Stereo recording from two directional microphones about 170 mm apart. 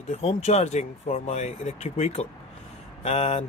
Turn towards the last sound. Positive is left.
turn(degrees=35)  # may be behind; listen again after turning